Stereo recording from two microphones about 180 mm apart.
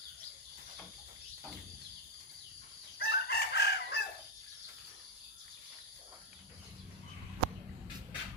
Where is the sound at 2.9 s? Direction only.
65° left (ahead or behind).